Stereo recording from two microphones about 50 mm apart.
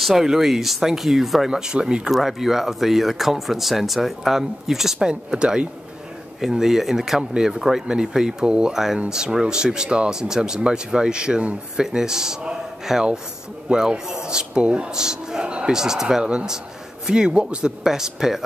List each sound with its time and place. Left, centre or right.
0.0 s speech: centre
1.5 s speech: centre
2.0 s speech: centre; by 17.7 s right
17.8 s speech: centre